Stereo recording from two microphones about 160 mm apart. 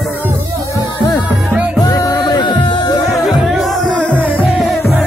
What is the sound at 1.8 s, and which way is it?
Music, 25° left (ahead or behind).